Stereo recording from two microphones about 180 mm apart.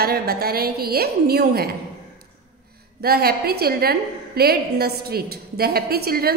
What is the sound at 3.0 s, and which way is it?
A woman's voice, 60° right (ahead or behind).